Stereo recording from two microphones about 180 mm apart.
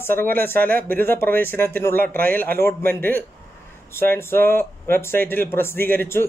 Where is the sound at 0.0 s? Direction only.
10° left (ahead or behind).